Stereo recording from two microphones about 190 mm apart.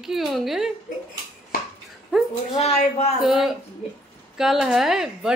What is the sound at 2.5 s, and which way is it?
Speech, 35° left (ahead or behind).